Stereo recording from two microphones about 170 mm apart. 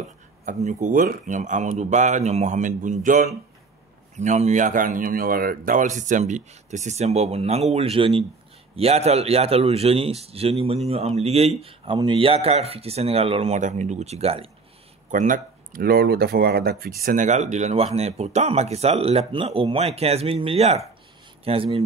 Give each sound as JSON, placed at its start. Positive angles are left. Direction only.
{"t": 0.5, "sound": "speech", "side_deg": -45}
{"t": 15.0, "sound": "speech", "side_deg": -50}
{"t": 17.0, "sound": "speech", "side_deg": -50}